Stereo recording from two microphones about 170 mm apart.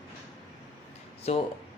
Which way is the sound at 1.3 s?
40° left (ahead or behind).